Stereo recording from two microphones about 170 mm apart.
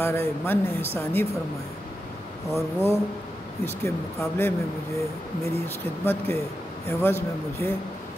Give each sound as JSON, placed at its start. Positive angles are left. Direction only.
{"t": 0.0, "sound": "speech", "side_deg": 15}
{"t": 2.5, "sound": "speech", "side_deg": 15}
{"t": 6.0, "sound": "speech", "side_deg": 15}